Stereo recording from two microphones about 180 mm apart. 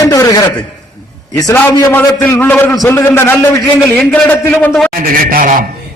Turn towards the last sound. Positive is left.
turn(degrees=-50)  # may be behind; listen again after turning